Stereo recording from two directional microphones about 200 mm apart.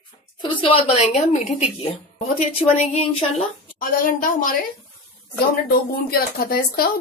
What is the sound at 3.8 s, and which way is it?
Speech, 45° left (ahead or behind).